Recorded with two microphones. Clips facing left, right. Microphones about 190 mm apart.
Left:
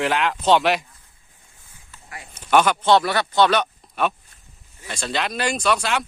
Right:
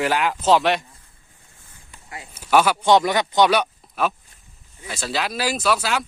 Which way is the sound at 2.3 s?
5° right (ahead or behind).